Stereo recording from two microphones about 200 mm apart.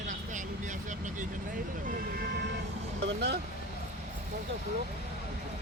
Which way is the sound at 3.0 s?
55° right (ahead or behind).